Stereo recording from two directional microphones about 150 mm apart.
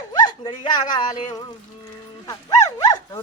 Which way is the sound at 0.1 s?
30° left (ahead or behind).